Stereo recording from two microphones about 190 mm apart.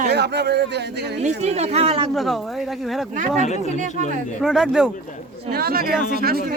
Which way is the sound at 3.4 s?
35° left (ahead or behind).